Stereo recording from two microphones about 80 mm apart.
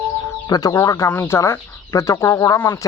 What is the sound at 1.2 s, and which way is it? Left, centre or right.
Speech, left.